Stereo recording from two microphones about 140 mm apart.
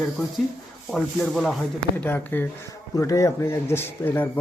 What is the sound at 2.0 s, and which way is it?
Speech, 15° left (ahead or behind).